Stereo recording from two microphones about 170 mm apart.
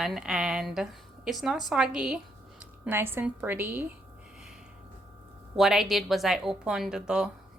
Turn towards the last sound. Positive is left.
turn(degrees=-5)  # may be behind; listen again after turning